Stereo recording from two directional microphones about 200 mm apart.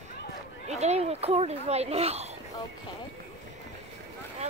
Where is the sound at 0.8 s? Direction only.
30° right (ahead or behind).